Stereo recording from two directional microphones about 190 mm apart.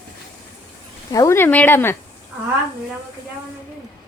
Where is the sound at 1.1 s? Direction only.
15° left (ahead or behind).